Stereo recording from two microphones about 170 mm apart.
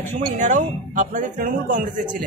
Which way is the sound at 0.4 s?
45° right (ahead or behind).